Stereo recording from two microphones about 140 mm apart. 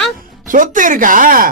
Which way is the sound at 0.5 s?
70° right (ahead or behind).